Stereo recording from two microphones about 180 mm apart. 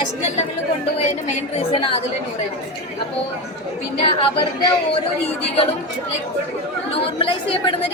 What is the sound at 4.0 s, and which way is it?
Speech, 30° left (ahead or behind).